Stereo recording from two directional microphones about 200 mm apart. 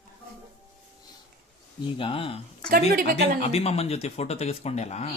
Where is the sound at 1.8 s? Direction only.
25° left (ahead or behind).